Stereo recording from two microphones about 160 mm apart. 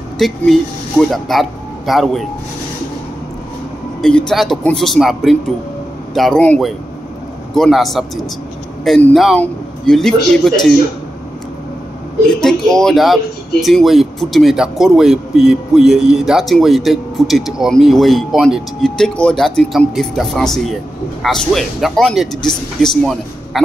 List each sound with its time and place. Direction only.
0.2 s speech: centre (ahead or behind)
4.0 s speech: centre (ahead or behind)
12.4 s speech: 5° left (ahead or behind)